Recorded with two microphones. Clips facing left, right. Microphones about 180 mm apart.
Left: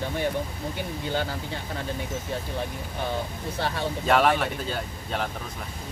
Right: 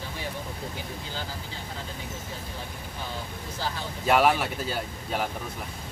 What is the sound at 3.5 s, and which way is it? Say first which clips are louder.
Speech: left 3 dB; 65° left (ahead or behind).